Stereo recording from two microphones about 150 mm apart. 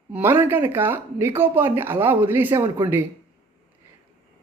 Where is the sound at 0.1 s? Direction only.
15° right (ahead or behind).